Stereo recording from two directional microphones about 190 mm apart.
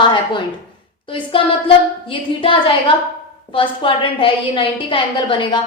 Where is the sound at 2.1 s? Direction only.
25° left (ahead or behind).